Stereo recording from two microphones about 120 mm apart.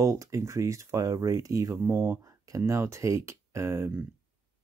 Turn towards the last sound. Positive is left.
turn(degrees=-20)  # may be behind; listen again after turning